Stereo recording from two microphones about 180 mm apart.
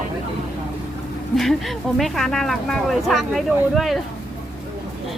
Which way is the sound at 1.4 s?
Centre (ahead or behind).